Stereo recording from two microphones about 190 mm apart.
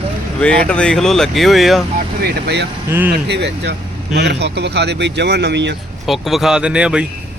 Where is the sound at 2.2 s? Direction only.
55° right (ahead or behind).